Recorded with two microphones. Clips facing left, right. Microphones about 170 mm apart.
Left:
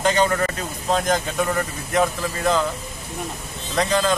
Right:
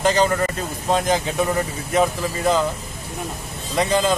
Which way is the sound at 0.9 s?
5° right (ahead or behind).